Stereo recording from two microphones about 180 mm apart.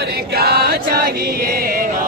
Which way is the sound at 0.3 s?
60° right (ahead or behind).